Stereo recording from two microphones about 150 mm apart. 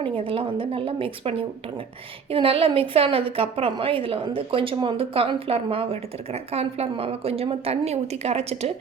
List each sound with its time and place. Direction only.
0.0 s a woman's voice: 35° right (ahead or behind)